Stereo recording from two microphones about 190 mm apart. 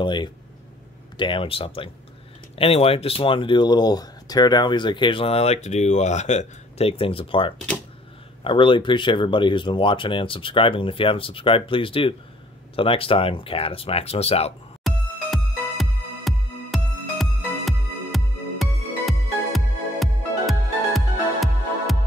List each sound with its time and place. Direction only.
0.0 s speech: 25° left (ahead or behind)
14.8 s music: centre (ahead or behind)